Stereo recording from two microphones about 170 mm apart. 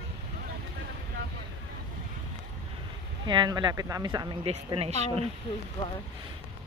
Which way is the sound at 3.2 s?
25° right (ahead or behind).